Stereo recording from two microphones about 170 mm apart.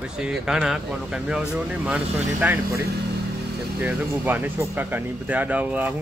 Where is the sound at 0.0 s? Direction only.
5° right (ahead or behind).